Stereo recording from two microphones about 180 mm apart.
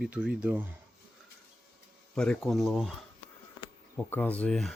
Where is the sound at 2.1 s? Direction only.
5° left (ahead or behind).